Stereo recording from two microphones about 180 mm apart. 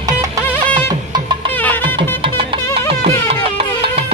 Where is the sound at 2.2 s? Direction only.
30° right (ahead or behind).